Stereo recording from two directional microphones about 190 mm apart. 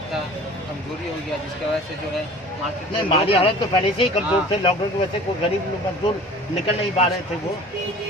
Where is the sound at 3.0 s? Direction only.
30° left (ahead or behind).